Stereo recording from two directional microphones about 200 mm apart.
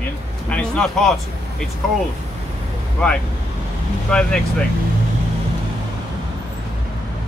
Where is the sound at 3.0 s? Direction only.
5° left (ahead or behind).